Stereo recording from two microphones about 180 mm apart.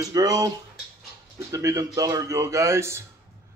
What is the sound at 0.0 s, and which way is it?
Speech, 20° right (ahead or behind).